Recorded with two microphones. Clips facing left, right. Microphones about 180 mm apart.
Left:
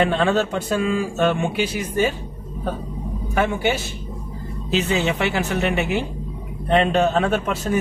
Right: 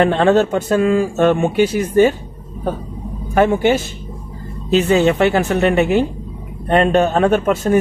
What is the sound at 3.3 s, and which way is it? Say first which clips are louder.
Speech: right 7 dB; 45° right (ahead or behind).